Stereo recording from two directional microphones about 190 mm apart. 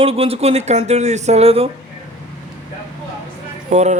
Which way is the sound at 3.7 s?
35° right (ahead or behind).